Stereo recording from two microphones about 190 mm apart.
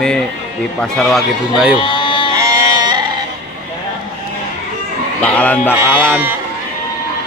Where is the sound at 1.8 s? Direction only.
25° left (ahead or behind).